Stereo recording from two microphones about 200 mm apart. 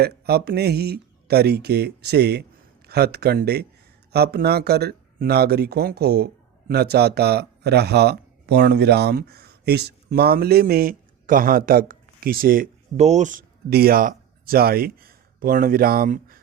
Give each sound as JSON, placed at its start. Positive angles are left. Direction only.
{"t": 0.0, "sound": "speech", "side_deg": -50}
{"t": 13.0, "sound": "speech", "side_deg": -35}
{"t": 13.7, "sound": "speech", "side_deg": -50}